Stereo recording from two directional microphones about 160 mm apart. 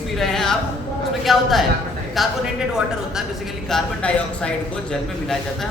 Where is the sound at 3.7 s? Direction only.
5° left (ahead or behind).